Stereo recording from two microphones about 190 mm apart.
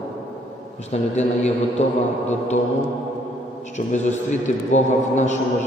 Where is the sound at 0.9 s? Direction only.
35° left (ahead or behind).